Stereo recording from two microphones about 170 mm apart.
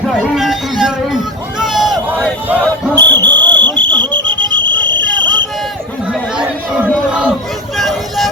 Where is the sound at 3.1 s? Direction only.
25° right (ahead or behind).